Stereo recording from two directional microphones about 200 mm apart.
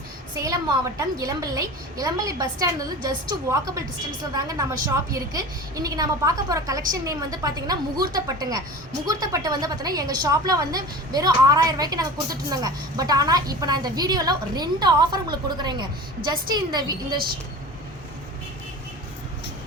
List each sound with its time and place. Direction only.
0.3 s a woman's voice: 15° right (ahead or behind)